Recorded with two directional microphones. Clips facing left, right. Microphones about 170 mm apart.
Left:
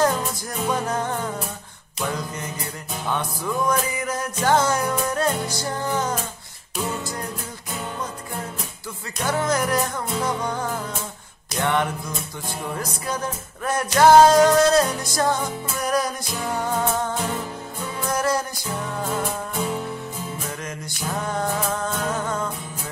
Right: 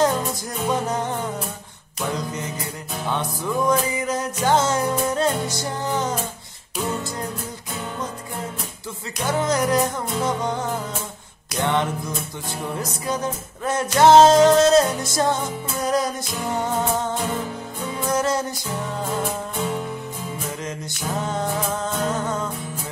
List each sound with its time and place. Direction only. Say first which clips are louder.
0.7 s music: right 1 dB; 20° right (ahead or behind)
3.1 s music: right 1 dB; 20° right (ahead or behind)
9.2 s music: right 1 dB; 20° right (ahead or behind)
11.6 s music: right 1 dB; 20° right (ahead or behind)
18.1 s music: right 1 dB; 20° right (ahead or behind)
21.2 s music: even; 20° right (ahead or behind)